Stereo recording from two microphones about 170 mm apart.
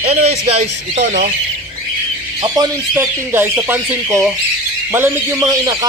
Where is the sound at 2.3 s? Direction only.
25° right (ahead or behind).